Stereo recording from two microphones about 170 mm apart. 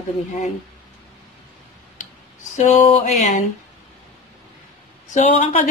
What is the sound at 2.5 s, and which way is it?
Speech, 40° left (ahead or behind).